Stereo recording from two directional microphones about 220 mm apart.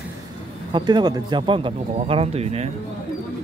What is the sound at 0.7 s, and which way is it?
Speech, 20° right (ahead or behind).